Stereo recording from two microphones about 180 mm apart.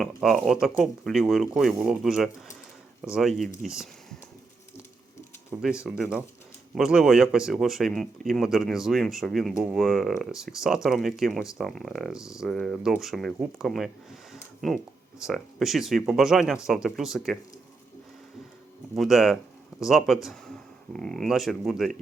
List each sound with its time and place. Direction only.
0.0 s speech: centre (ahead or behind)
5.8 s speech: 5° right (ahead or behind)
18.9 s speech: centre (ahead or behind)